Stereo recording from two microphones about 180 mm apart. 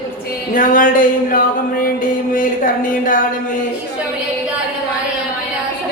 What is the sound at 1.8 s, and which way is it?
Music, 50° left (ahead or behind).